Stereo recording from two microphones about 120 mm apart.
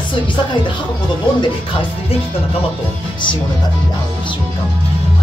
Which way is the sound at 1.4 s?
45° left (ahead or behind).